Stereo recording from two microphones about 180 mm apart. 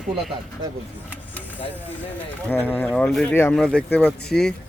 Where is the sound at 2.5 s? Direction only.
10° left (ahead or behind).